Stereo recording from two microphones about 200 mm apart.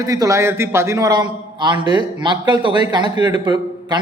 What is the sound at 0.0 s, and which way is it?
A man's voice, 15° right (ahead or behind).